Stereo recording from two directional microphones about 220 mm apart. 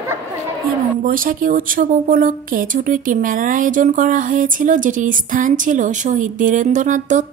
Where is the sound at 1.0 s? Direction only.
40° right (ahead or behind).